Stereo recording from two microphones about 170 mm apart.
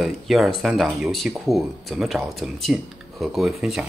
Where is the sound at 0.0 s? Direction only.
Centre (ahead or behind).